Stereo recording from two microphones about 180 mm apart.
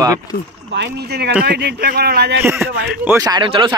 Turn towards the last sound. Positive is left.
turn(degrees=-25)  # may be behind; listen again after turning